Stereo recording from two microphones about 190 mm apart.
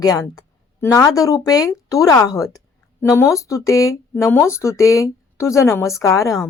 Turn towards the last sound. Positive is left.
turn(degrees=15)  # may be behind; listen again after turning